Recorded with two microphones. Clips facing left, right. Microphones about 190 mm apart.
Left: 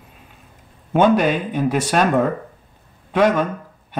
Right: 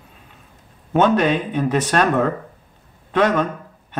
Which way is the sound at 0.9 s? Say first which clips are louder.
Left 1 dB; 10° left (ahead or behind).